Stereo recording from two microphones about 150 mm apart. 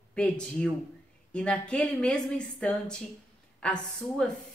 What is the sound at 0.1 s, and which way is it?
A woman's voice, 5° left (ahead or behind).